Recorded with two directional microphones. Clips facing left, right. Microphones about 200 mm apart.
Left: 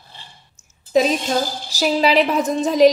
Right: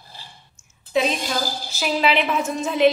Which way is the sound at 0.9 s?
40° left (ahead or behind).